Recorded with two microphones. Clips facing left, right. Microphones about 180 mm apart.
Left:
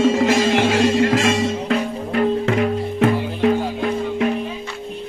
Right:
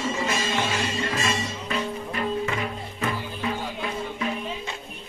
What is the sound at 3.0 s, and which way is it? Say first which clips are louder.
Music: left 12 dB; 70° left (ahead or behind).